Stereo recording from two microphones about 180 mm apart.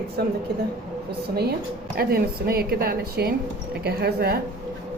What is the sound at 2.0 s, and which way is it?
A woman's voice, 60° right (ahead or behind).